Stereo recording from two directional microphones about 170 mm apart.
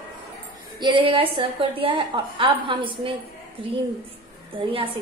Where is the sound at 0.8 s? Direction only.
30° right (ahead or behind).